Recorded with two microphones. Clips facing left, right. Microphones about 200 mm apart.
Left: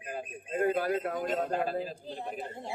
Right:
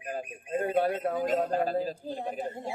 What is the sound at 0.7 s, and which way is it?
Speech, 25° right (ahead or behind).